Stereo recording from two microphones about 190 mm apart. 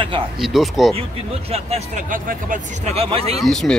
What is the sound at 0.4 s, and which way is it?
Speech, centre (ahead or behind).